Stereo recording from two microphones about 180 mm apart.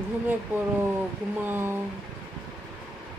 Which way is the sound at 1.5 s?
10° right (ahead or behind).